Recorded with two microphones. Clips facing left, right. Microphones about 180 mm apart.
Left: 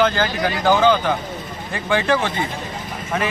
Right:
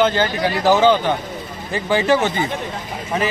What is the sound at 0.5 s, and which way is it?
Speech, 5° right (ahead or behind).